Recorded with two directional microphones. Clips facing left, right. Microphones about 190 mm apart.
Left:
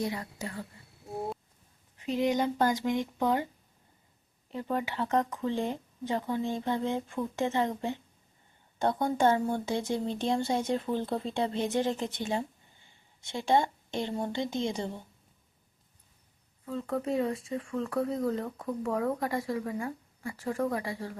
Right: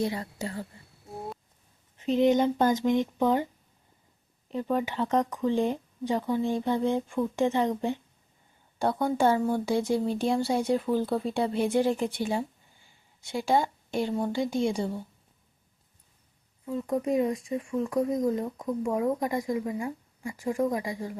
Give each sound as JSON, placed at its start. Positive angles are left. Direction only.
{"t": 0.0, "sound": "speech", "side_deg": -30}
{"t": 2.0, "sound": "speech", "side_deg": -25}
{"t": 4.4, "sound": "speech", "side_deg": -20}
{"t": 13.2, "sound": "speech", "side_deg": 25}
{"t": 14.2, "sound": "speech", "side_deg": -10}
{"t": 16.6, "sound": "speech", "side_deg": -15}